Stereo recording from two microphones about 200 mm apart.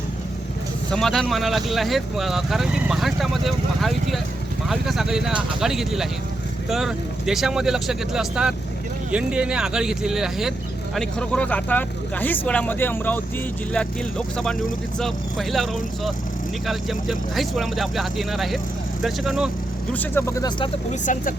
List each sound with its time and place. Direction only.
0.9 s speech: centre (ahead or behind)
19.9 s speech: 10° left (ahead or behind)
20.9 s speech: 40° left (ahead or behind)